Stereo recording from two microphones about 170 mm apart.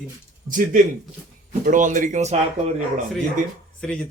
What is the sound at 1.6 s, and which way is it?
Speech, 50° right (ahead or behind).